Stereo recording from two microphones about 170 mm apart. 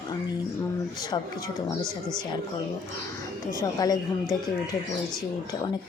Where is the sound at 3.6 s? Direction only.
20° left (ahead or behind).